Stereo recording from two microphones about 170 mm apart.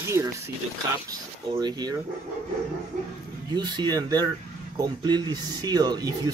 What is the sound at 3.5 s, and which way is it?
Speech, 25° right (ahead or behind).